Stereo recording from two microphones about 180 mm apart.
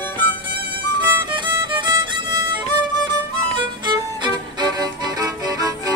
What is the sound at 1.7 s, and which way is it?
Violin, 25° right (ahead or behind).